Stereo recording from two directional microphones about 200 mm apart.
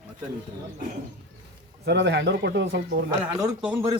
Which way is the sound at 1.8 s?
60° right (ahead or behind).